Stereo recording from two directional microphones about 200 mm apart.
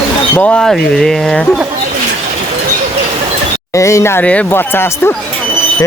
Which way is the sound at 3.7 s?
15° left (ahead or behind).